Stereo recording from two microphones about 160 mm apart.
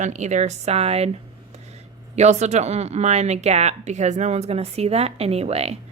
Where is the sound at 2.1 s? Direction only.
45° right (ahead or behind).